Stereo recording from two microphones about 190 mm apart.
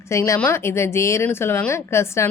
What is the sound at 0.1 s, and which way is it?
A woman's voice, 15° left (ahead or behind).